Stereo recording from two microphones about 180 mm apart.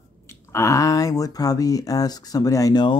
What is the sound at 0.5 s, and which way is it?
Speech, 15° left (ahead or behind).